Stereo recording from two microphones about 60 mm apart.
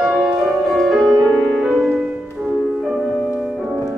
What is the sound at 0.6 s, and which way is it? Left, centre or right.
Music, centre.